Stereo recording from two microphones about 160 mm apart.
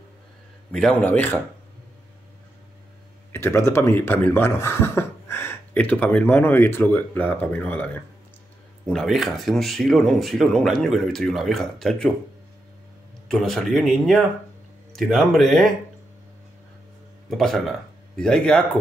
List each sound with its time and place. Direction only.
0.7 s speech: 5° left (ahead or behind)
3.3 s speech: 15° left (ahead or behind)
8.8 s speech: centre (ahead or behind)
13.3 s speech: centre (ahead or behind)
17.3 s speech: centre (ahead or behind)